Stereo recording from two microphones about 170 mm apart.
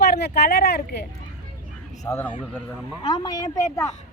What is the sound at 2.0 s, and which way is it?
Speech, 15° left (ahead or behind).